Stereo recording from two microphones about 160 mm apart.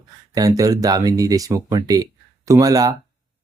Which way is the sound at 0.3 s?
20° right (ahead or behind).